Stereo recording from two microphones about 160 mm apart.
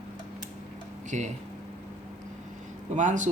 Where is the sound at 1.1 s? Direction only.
50° right (ahead or behind).